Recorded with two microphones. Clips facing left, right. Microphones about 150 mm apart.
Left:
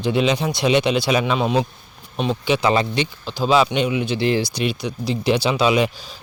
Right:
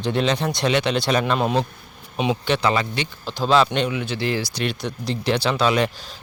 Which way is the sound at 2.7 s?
25° left (ahead or behind).